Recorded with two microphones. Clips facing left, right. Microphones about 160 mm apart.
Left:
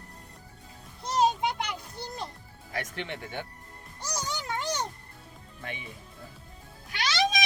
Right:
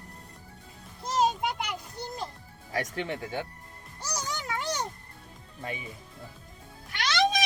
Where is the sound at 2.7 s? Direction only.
40° right (ahead or behind).